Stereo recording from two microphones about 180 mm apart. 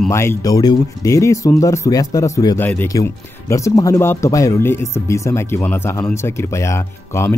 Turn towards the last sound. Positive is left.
turn(degrees=15)  # may be behind; listen again after turning